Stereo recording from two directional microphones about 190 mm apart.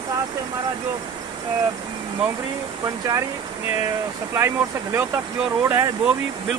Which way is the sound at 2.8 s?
20° right (ahead or behind).